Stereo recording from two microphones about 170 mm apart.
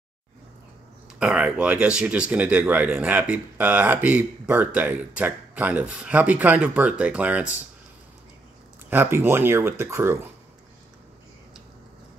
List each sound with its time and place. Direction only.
1.2 s speech: 5° right (ahead or behind)
8.9 s speech: 15° right (ahead or behind)